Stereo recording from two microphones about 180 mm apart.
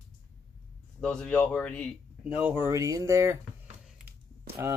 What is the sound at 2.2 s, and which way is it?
Speech, 10° right (ahead or behind).